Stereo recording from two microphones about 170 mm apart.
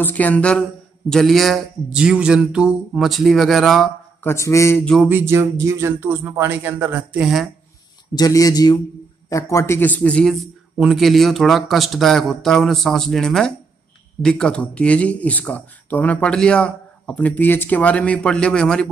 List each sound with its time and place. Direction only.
0.0 s a man's voice: 10° left (ahead or behind)
4.2 s speech: 15° left (ahead or behind)
5.0 s speech: 15° right (ahead or behind)
8.1 s a man's voice: 20° left (ahead or behind); by 18.9 s 5° left (ahead or behind)